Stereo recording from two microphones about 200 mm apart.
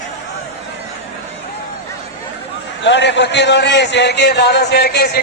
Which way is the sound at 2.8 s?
65° left (ahead or behind).